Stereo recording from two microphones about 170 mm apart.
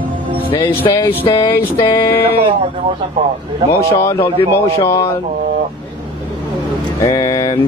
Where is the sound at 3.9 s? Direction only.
15° left (ahead or behind).